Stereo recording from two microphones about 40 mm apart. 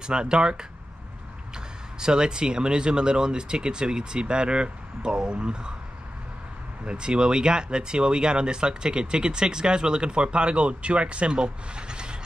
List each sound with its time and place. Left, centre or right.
0.0 s speech: right
2.0 s speech: centre
6.9 s speech: right